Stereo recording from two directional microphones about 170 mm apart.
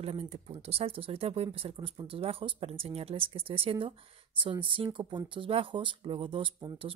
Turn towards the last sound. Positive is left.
turn(degrees=-30)  # may be behind; listen again after turning